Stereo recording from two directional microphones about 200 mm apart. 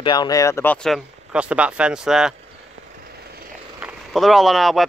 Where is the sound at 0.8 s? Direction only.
5° right (ahead or behind).